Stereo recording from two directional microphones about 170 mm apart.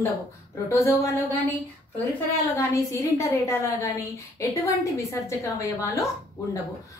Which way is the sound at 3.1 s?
15° left (ahead or behind).